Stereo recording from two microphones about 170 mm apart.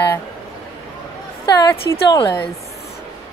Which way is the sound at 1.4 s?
20° left (ahead or behind).